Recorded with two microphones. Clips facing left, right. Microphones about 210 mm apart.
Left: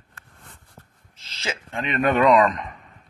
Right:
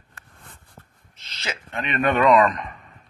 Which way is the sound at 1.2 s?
30° left (ahead or behind).